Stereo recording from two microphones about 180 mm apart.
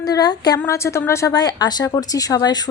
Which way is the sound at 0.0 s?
20° left (ahead or behind).